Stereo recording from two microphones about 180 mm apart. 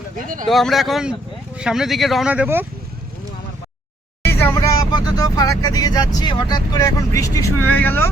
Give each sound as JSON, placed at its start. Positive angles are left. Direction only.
{"t": 0.4, "sound": "speech", "side_deg": 0}
{"t": 4.4, "sound": "speech", "side_deg": 15}